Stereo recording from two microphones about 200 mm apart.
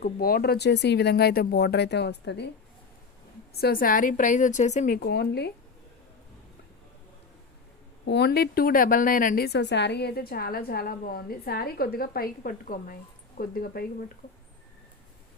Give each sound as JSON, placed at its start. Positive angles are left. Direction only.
{"t": 0.0, "sound": "speech", "side_deg": 50}
{"t": 3.5, "sound": "a woman's voice", "side_deg": 50}
{"t": 4.9, "sound": "speech", "side_deg": 55}
{"t": 8.0, "sound": "a woman's voice", "side_deg": 60}